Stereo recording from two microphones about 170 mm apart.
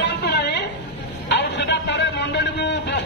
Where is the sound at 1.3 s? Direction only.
90° left.